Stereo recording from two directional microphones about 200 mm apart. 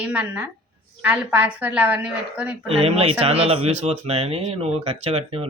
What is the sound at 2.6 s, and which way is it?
Speech, 30° right (ahead or behind).